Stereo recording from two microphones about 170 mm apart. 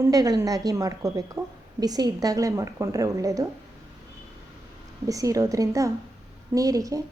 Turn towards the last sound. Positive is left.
turn(degrees=-20)  # may be behind; listen again after turning